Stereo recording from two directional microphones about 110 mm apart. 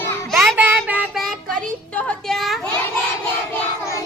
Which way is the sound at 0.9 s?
15° right (ahead or behind).